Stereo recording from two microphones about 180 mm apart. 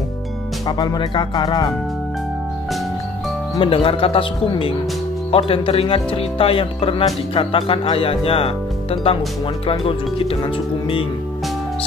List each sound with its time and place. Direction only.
0.7 s speech: 25° left (ahead or behind)
3.5 s speech: 30° left (ahead or behind)